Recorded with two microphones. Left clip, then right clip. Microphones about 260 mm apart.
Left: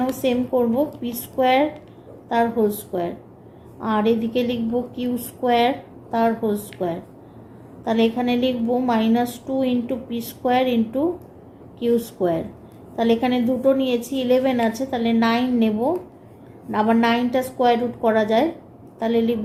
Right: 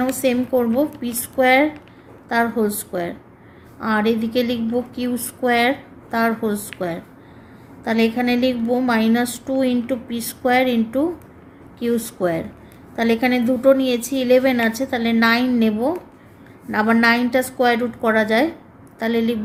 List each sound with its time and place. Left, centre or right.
0.0 s a woman's voice: right
8.0 s a woman's voice: right